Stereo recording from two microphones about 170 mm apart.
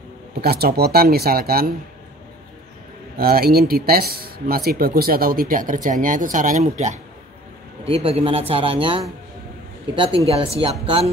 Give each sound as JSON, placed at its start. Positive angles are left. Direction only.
{"t": 0.3, "sound": "speech", "side_deg": -65}
{"t": 3.2, "sound": "speech", "side_deg": -60}
{"t": 10.2, "sound": "speech", "side_deg": -35}